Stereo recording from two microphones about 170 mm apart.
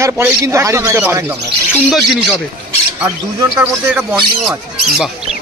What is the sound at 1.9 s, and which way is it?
Speech, 5° right (ahead or behind).